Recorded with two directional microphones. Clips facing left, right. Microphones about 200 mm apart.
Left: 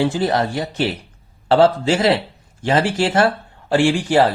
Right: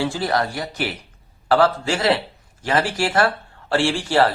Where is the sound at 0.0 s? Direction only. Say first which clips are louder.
Left 4 dB; 20° left (ahead or behind).